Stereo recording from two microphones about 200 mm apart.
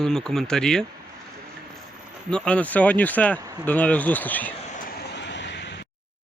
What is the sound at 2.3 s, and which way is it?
Speech, 5° left (ahead or behind).